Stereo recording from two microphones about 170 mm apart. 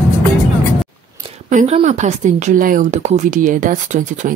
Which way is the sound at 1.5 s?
40° right (ahead or behind).